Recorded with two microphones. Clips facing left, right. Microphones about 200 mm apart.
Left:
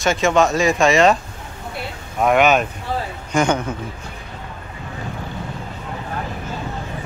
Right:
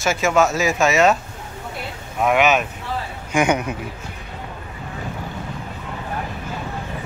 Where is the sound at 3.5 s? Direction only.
15° right (ahead or behind).